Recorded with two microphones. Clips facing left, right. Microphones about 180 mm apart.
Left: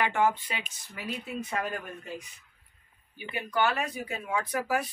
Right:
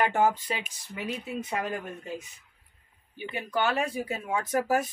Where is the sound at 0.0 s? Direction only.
40° right (ahead or behind).